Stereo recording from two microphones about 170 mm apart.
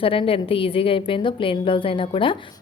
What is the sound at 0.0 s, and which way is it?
A woman's voice, 30° left (ahead or behind).